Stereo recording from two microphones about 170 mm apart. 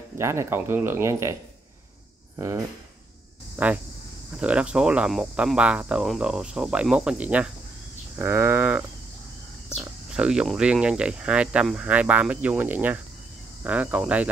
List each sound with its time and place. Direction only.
0.2 s speech: 15° right (ahead or behind)